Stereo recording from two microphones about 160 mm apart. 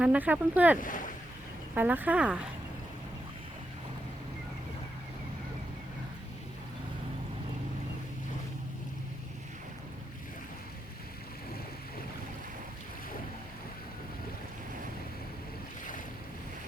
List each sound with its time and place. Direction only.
0.0 s speech: 10° right (ahead or behind)
0.8 s speech: 55° left (ahead or behind)
1.7 s speech: 10° right (ahead or behind)